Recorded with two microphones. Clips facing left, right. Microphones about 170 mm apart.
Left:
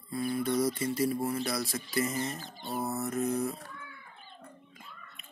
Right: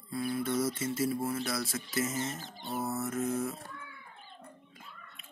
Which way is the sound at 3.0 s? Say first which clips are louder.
Left 4 dB; centre (ahead or behind).